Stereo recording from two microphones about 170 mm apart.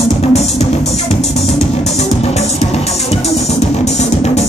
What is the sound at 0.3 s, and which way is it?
Music, 40° left (ahead or behind).